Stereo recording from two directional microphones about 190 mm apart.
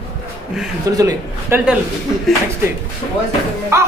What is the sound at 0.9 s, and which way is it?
Speech, 20° right (ahead or behind).